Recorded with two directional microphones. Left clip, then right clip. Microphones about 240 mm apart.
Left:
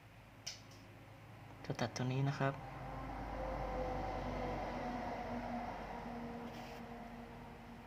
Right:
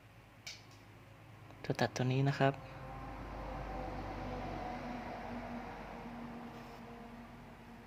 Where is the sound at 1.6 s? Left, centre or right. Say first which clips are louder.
Right 6 dB; centre.